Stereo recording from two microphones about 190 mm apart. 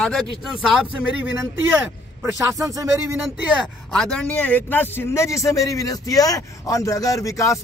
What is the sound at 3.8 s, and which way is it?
Speech, 5° left (ahead or behind).